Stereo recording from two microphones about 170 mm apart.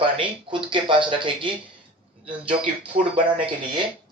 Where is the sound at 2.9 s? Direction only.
30° right (ahead or behind).